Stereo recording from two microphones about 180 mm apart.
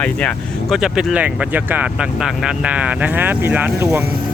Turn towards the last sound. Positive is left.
turn(degrees=-10)  # may be behind; listen again after turning